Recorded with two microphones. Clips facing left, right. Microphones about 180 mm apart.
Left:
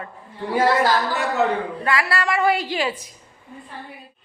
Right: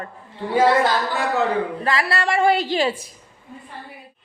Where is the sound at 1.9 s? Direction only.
25° right (ahead or behind).